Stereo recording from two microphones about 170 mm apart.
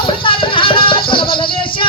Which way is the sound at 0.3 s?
30° left (ahead or behind).